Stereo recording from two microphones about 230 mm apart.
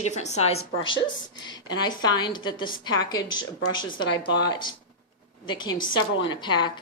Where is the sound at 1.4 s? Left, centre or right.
Centre.